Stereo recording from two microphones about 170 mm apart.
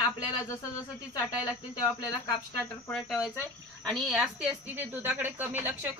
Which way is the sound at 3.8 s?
Centre (ahead or behind).